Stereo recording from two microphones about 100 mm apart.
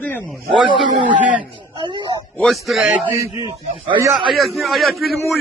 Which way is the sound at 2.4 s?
Centre (ahead or behind).